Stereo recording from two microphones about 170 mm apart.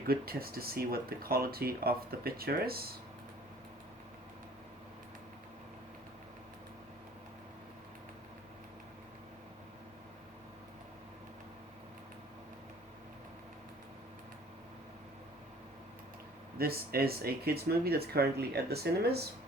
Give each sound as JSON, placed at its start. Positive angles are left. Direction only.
{"t": 0.1, "sound": "speech", "side_deg": -60}
{"t": 16.6, "sound": "speech", "side_deg": -60}